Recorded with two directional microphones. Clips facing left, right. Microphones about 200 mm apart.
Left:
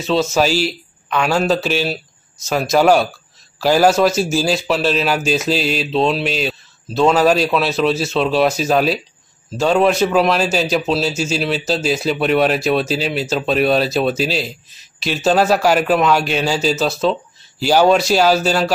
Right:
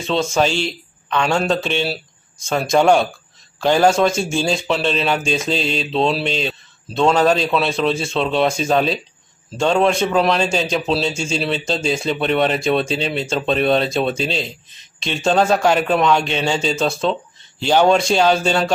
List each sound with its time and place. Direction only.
0.0 s a man's voice: 5° left (ahead or behind)